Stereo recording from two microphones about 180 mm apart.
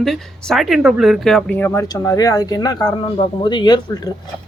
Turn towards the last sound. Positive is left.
turn(degrees=20)  # may be behind; listen again after turning